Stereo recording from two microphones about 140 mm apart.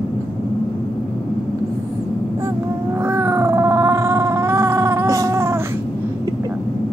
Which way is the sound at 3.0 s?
20° right (ahead or behind).